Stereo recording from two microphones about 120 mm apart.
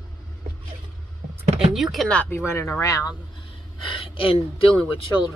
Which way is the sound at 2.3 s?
20° left (ahead or behind).